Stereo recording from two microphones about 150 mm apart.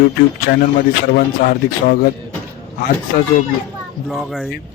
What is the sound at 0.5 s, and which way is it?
A man's voice, 90° left.